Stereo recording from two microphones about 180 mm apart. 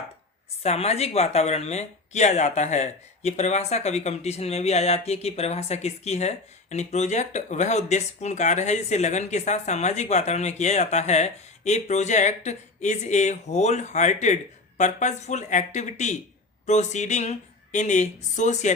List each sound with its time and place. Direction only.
0.6 s speech: 35° left (ahead or behind)